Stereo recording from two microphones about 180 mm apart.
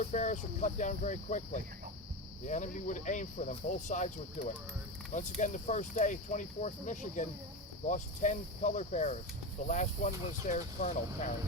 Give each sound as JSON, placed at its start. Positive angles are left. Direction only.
{"t": 0.0, "sound": "speech", "side_deg": 40}